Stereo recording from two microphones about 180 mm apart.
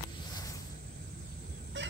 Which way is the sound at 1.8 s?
80° right.